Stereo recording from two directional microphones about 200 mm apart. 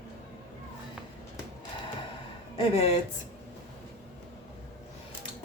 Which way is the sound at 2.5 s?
30° left (ahead or behind).